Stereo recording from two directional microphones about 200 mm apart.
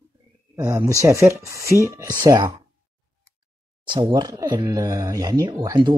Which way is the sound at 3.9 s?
20° right (ahead or behind).